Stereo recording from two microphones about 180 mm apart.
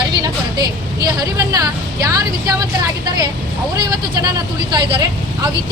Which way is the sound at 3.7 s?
20° right (ahead or behind).